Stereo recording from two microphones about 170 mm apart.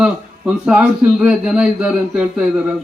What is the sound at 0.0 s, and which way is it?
A man's voice, 5° right (ahead or behind).